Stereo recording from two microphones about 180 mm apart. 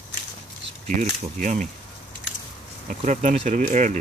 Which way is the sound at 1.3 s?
45° right (ahead or behind).